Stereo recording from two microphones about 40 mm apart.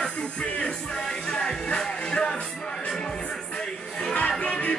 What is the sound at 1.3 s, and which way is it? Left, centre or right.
Music, centre.